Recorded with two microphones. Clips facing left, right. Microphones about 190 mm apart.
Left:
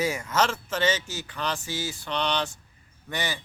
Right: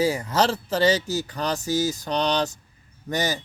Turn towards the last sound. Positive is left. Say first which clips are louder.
# right 6 dB
turn(degrees=-40)  # may be behind; listen again after turning